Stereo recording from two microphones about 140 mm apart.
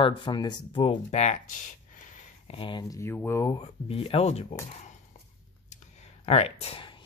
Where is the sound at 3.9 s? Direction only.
45° left (ahead or behind).